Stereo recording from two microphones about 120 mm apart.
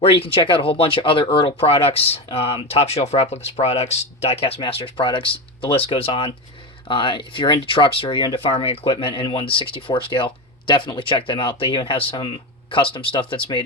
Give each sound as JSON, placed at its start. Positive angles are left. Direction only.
{"t": 0.0, "sound": "speech", "side_deg": 50}